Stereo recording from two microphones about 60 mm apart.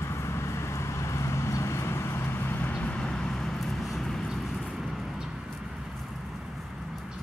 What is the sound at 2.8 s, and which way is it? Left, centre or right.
Vehicle, centre.